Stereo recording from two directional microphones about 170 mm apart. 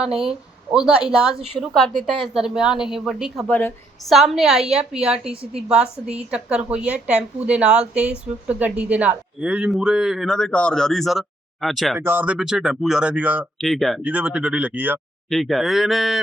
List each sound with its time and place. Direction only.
0.2 s a woman's voice: 5° right (ahead or behind)
5.2 s a woman's voice: 35° right (ahead or behind)
5.6 s a woman's voice: 5° right (ahead or behind)
11.9 s speech: 10° right (ahead or behind)
15.3 s a woman's voice: centre (ahead or behind)